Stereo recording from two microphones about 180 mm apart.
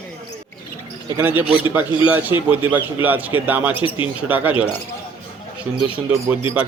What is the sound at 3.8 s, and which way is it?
Speech, 30° left (ahead or behind).